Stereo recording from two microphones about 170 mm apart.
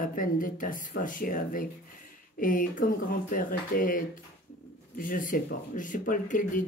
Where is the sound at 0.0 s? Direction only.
55° left (ahead or behind).